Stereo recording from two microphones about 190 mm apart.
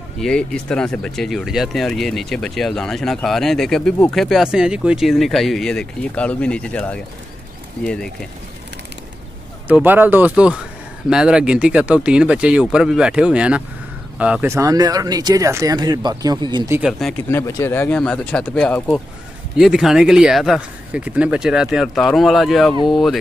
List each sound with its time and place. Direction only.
0.2 s speech: 5° left (ahead or behind)
9.7 s speech: 10° right (ahead or behind)
16.7 s speech: 5° right (ahead or behind)
17.3 s speech: 15° left (ahead or behind)